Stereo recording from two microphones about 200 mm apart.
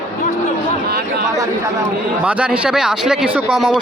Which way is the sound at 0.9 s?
50° right (ahead or behind).